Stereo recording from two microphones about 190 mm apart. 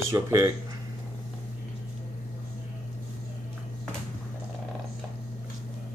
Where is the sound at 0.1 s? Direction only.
15° right (ahead or behind).